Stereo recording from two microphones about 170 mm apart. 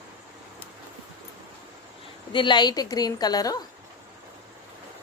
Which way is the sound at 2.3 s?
25° left (ahead or behind).